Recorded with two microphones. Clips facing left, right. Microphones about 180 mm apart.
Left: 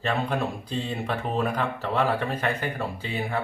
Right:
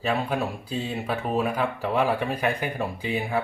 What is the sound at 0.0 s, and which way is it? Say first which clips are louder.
Speech: right 1 dB; 5° right (ahead or behind).